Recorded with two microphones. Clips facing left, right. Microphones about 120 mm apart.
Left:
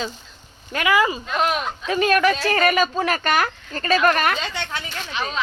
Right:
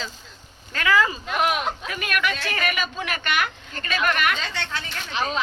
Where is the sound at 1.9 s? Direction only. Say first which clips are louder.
Left 13 dB; 30° left (ahead or behind).